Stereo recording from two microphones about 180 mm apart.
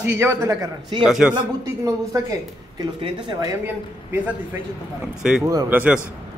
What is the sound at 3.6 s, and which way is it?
A man's voice, 10° right (ahead or behind).